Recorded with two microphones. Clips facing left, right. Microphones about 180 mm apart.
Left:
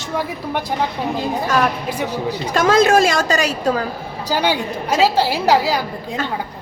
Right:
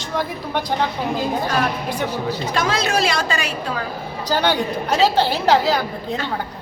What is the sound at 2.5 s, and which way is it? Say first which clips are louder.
A woman's voice: left 9 dB; 45° left (ahead or behind).